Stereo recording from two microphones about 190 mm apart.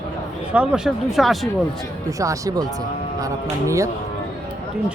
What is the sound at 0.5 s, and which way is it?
Speech, 5° right (ahead or behind).